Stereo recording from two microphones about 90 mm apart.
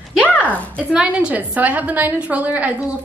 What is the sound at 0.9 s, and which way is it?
A woman's voice, 10° right (ahead or behind).